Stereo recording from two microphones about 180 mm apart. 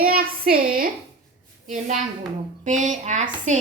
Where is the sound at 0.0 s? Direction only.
55° right (ahead or behind).